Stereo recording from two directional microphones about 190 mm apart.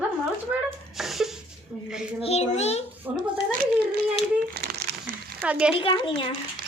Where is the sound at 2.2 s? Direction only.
35° left (ahead or behind).